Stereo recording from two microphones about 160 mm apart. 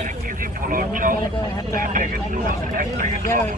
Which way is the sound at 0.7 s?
60° right (ahead or behind).